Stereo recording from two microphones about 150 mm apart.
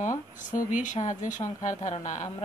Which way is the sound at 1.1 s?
55° left (ahead or behind).